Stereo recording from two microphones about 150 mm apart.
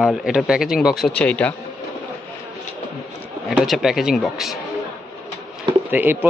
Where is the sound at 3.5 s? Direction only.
Centre (ahead or behind).